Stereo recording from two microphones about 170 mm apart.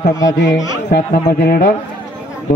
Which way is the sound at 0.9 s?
75° left (ahead or behind).